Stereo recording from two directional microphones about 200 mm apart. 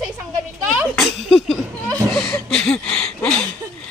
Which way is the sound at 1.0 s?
Centre (ahead or behind).